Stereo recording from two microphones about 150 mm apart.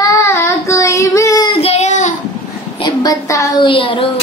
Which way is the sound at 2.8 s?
25° left (ahead or behind).